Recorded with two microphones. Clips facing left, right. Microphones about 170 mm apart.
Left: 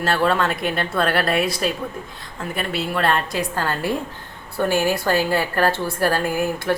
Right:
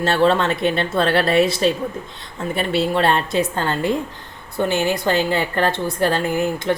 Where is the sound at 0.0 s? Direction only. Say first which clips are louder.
Right 3 dB; 25° right (ahead or behind).